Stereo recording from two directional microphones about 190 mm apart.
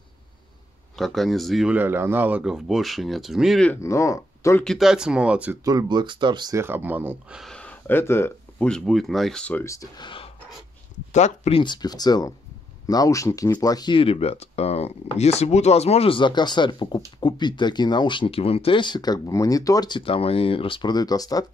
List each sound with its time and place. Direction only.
0.9 s speech: centre (ahead or behind)
4.6 s speech: centre (ahead or behind); by 10.3 s 25° left (ahead or behind)
11.1 s speech: 35° left (ahead or behind); by 21.5 s 20° left (ahead or behind)